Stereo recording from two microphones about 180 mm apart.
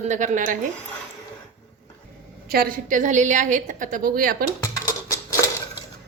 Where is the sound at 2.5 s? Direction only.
55° right (ahead or behind).